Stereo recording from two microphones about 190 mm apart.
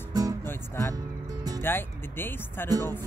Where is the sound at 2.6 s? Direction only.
20° right (ahead or behind).